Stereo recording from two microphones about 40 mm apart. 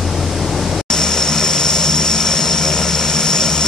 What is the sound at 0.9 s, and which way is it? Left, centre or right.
Vehicle, centre.